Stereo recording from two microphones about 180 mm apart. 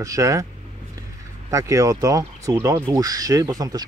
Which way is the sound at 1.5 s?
15° right (ahead or behind).